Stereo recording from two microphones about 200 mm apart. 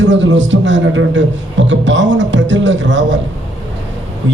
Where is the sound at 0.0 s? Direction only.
65° right (ahead or behind).